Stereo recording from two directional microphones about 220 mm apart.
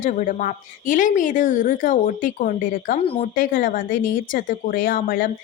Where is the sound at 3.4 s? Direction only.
40° left (ahead or behind).